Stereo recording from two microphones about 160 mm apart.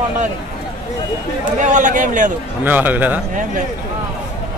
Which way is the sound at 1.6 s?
50° right (ahead or behind).